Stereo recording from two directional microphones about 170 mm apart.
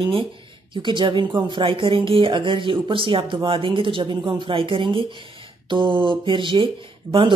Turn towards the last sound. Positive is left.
turn(degrees=-30)  # may be behind; listen again after turning